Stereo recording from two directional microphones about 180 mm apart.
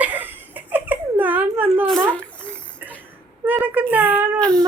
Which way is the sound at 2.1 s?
5° left (ahead or behind).